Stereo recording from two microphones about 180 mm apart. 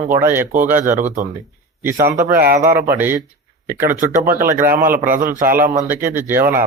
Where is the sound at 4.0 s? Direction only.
50° right (ahead or behind).